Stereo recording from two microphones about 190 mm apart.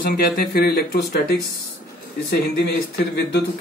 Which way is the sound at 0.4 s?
55° left (ahead or behind).